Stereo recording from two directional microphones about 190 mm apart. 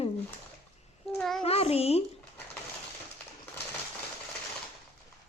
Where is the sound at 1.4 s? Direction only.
30° left (ahead or behind).